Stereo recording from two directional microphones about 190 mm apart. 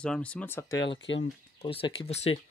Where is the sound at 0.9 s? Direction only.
75° left (ahead or behind).